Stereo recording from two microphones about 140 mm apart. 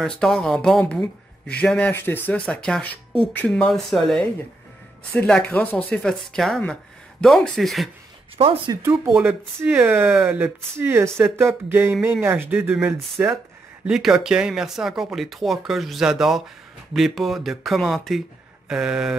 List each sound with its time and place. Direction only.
0.0 s speech: 5° left (ahead or behind)
8.4 s speech: 40° right (ahead or behind)
9.1 s speech: 10° right (ahead or behind)